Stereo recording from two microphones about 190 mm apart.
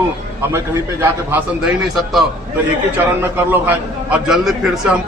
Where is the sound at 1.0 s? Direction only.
10° right (ahead or behind).